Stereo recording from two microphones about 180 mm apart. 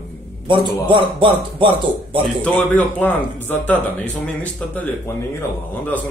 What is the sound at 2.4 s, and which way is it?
Speech, 10° left (ahead or behind).